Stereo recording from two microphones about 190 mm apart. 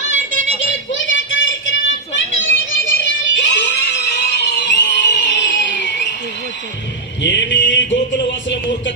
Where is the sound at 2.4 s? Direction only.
90° left; by 6.2 s 70° left (ahead or behind).